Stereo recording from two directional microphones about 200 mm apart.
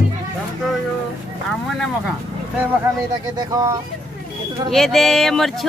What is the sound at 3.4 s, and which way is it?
Speech, 20° right (ahead or behind).